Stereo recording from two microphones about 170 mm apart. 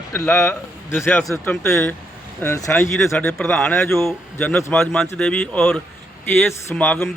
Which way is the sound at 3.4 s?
5° left (ahead or behind).